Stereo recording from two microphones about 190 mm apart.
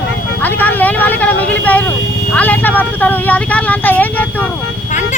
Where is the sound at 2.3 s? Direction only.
10° left (ahead or behind).